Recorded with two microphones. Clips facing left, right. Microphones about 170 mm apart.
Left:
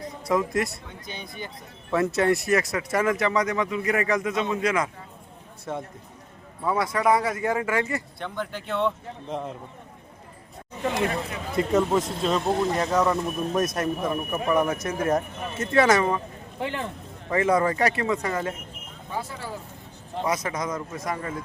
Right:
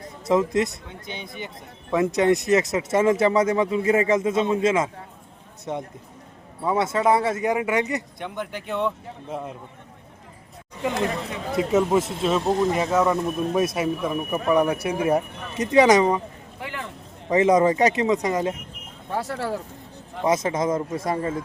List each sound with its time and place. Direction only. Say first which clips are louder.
0.3 s a man's voice: right 4 dB; 20° right (ahead or behind); by 9.6 s 5° right (ahead or behind)
11.5 s speech: right 2 dB; 5° right (ahead or behind)
16.6 s speech: left 4 dB; 25° left (ahead or behind)
17.2 s speech: right 5 dB; 20° right (ahead or behind)
19.1 s speech: right 6 dB; 70° right (ahead or behind)
20.2 s speech: right 6 dB; 25° right (ahead or behind)